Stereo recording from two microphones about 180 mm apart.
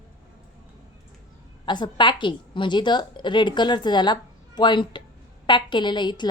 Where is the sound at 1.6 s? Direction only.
25° left (ahead or behind).